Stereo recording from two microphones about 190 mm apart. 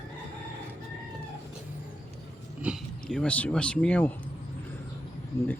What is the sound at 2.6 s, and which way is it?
Speech, centre (ahead or behind).